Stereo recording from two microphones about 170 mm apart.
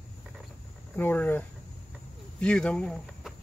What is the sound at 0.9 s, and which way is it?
Speech, 10° left (ahead or behind).